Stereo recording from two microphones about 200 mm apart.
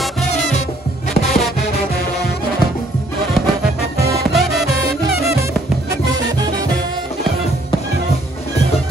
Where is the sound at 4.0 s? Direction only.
15° right (ahead or behind).